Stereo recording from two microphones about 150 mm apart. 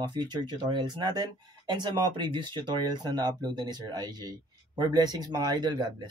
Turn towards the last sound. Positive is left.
turn(degrees=-30)  # may be behind; listen again after turning